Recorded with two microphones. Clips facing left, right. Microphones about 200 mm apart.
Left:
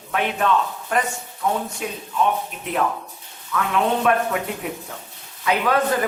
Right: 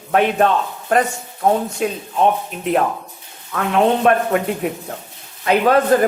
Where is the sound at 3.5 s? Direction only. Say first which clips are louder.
Right 5 dB; 50° right (ahead or behind).